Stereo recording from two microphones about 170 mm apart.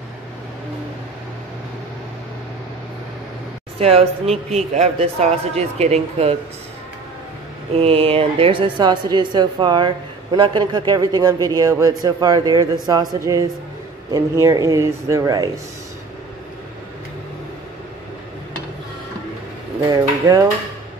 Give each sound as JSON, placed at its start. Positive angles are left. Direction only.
{"t": 3.8, "sound": "a man's voice", "side_deg": -35}
{"t": 7.7, "sound": "a woman's voice", "side_deg": -35}
{"t": 19.9, "sound": "a woman's voice", "side_deg": -20}